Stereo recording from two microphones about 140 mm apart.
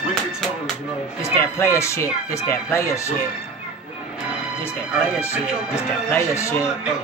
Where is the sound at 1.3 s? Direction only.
20° left (ahead or behind).